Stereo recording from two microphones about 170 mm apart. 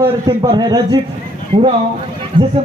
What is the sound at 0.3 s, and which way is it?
A man's voice, 25° right (ahead or behind).